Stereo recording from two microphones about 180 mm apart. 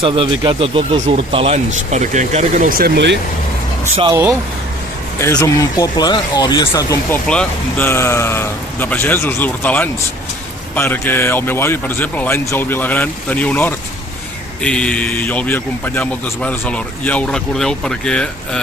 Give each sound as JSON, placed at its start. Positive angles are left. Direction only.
{"t": 0.0, "sound": "speech", "side_deg": -30}
{"t": 4.1, "sound": "speech", "side_deg": -15}
{"t": 5.2, "sound": "speech", "side_deg": 20}
{"t": 7.3, "sound": "a man's voice", "side_deg": 10}